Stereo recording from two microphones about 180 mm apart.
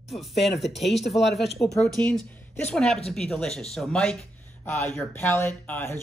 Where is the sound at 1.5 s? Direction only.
15° left (ahead or behind).